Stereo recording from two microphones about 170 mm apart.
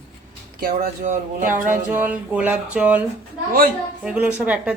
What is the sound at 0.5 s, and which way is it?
Speech, 55° right (ahead or behind).